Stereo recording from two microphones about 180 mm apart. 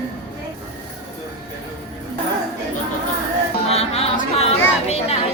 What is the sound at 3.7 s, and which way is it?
Music, 35° left (ahead or behind).